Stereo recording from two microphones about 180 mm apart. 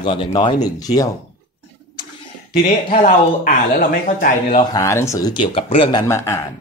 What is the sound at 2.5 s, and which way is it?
A man's voice, 50° left (ahead or behind).